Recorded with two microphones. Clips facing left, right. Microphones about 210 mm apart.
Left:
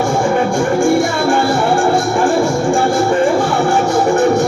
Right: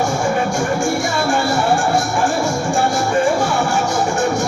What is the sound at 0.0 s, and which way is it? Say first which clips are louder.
Music: left 4 dB; 55° left (ahead or behind).